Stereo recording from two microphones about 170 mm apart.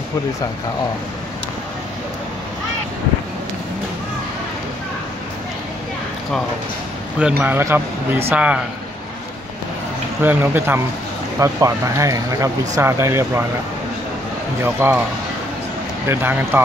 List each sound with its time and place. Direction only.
7.2 s speech: 10° right (ahead or behind)
10.2 s speech: 10° right (ahead or behind)
14.6 s speech: 15° right (ahead or behind)
16.1 s speech: 15° right (ahead or behind)